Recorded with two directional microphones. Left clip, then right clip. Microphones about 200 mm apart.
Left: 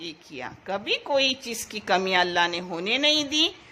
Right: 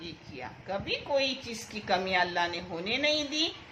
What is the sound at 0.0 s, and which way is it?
A woman's voice, 60° left (ahead or behind).